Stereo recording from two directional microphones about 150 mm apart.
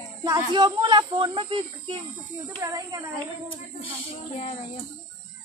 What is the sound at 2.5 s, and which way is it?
Speech, 25° right (ahead or behind).